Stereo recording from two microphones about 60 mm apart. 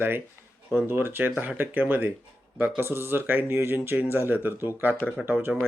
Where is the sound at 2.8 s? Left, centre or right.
Right.